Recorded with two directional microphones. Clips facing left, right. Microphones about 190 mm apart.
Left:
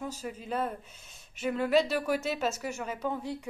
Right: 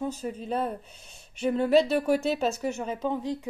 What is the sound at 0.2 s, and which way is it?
A woman's voice, 30° right (ahead or behind).